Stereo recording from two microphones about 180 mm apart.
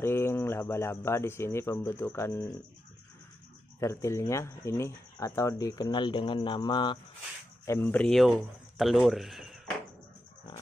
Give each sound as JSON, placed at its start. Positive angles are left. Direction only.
{"t": 0.0, "sound": "speech", "side_deg": 15}
{"t": 3.8, "sound": "speech", "side_deg": 15}
{"t": 7.6, "sound": "speech", "side_deg": 15}